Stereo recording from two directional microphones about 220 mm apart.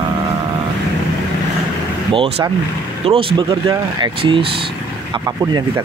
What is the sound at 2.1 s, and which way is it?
Speech, 25° right (ahead or behind).